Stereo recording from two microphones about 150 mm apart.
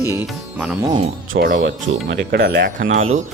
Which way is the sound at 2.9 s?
50° right (ahead or behind).